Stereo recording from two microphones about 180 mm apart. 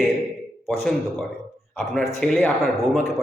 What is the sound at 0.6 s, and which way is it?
A man's voice, centre (ahead or behind).